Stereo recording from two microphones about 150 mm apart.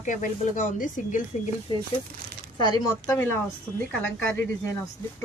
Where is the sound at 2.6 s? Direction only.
25° left (ahead or behind).